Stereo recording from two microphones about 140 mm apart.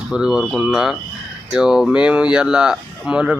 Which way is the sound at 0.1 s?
5° right (ahead or behind).